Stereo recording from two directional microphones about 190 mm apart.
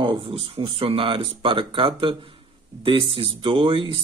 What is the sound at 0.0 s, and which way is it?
Speech, 25° right (ahead or behind).